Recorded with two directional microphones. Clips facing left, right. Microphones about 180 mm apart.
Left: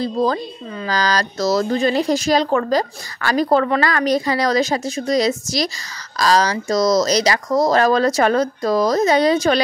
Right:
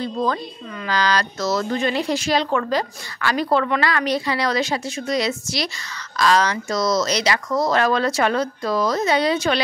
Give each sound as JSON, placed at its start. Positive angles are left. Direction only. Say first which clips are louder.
{"t": 0.0, "sound": "speech", "louder": "left 4 dB", "side_deg": 35}